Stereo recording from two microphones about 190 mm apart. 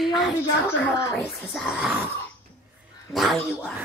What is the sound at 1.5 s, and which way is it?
Speech, centre (ahead or behind).